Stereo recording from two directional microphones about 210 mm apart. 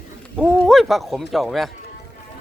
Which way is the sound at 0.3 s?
Centre (ahead or behind).